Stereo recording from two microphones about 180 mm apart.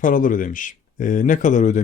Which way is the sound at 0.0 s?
50° left (ahead or behind).